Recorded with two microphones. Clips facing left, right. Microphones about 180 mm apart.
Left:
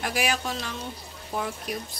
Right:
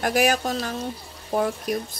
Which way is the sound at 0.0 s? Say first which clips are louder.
Right 7 dB; 45° right (ahead or behind).